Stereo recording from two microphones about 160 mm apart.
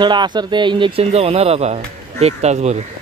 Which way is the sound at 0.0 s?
30° right (ahead or behind).